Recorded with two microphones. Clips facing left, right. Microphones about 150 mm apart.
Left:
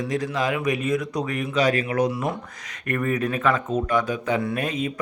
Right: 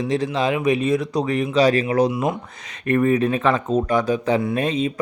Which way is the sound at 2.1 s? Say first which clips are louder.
Right 4 dB; 20° right (ahead or behind).